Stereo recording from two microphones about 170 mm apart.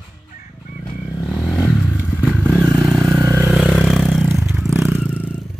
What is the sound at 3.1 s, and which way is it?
Vehicle, 15° right (ahead or behind).